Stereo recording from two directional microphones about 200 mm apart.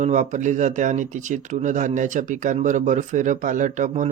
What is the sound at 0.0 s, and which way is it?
Speech, 35° right (ahead or behind).